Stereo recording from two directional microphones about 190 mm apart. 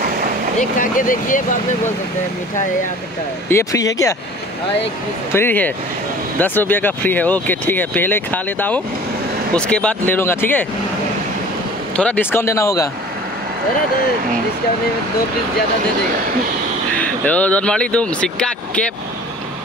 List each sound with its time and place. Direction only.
0.6 s speech: 45° left (ahead or behind)
3.4 s speech: 15° left (ahead or behind)
5.3 s speech: 10° left (ahead or behind)
12.0 s speech: 10° left (ahead or behind)
16.9 s speech: 5° left (ahead or behind)